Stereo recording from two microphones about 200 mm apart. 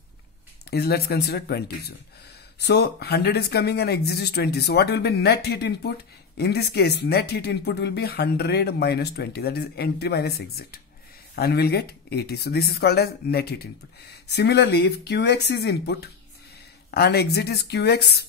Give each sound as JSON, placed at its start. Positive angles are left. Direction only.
{"t": 0.7, "sound": "speech", "side_deg": 50}